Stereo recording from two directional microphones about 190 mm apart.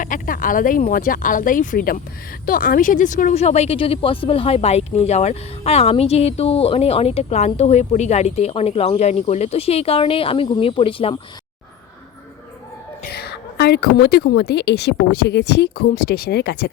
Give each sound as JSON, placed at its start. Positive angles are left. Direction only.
{"t": 0.0, "sound": "a woman's voice", "side_deg": 45}
{"t": 13.1, "sound": "a woman's voice", "side_deg": 55}